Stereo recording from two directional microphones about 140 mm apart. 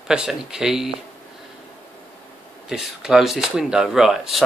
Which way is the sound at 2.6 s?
5° right (ahead or behind).